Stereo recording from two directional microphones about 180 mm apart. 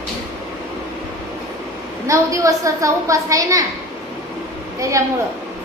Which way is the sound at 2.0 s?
15° right (ahead or behind).